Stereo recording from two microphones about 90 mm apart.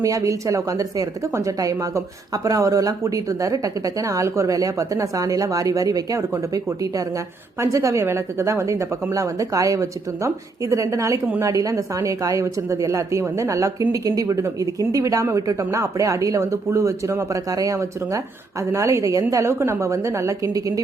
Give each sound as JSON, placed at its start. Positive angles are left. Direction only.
{"t": 0.0, "sound": "speech", "side_deg": -40}